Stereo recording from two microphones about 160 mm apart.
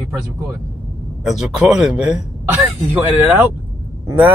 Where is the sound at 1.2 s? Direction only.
5° right (ahead or behind).